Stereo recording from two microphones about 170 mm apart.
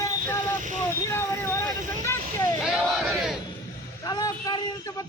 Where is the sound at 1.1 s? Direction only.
15° left (ahead or behind).